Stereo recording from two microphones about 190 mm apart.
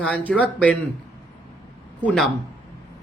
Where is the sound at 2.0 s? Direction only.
5° left (ahead or behind).